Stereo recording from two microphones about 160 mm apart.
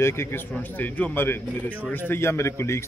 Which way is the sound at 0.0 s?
15° left (ahead or behind).